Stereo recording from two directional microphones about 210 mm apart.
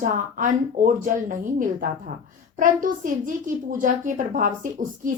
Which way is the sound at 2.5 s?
40° right (ahead or behind).